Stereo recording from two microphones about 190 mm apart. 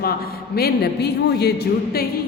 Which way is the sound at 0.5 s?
55° left (ahead or behind).